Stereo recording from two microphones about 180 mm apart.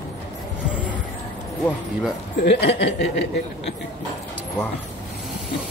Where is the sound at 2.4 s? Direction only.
70° left (ahead or behind).